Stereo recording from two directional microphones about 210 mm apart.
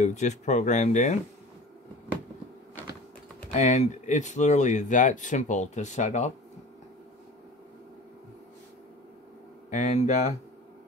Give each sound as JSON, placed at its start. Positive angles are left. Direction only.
{"t": 0.0, "sound": "speech", "side_deg": 35}
{"t": 3.5, "sound": "speech", "side_deg": 35}
{"t": 9.7, "sound": "speech", "side_deg": 35}